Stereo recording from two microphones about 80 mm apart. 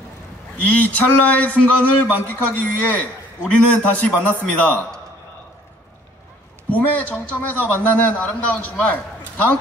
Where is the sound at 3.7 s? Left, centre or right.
Centre.